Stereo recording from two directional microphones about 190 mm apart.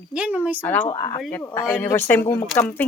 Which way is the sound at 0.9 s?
20° left (ahead or behind).